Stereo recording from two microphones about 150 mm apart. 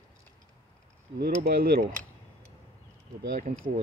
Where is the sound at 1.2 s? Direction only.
80° right.